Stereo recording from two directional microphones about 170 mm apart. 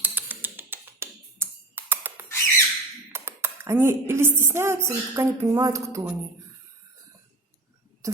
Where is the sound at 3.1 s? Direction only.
15° right (ahead or behind).